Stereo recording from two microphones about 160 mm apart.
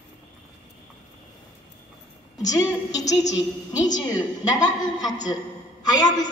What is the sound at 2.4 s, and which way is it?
A woman's voice, 20° left (ahead or behind).